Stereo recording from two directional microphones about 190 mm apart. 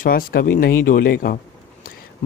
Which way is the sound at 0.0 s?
50° left (ahead or behind).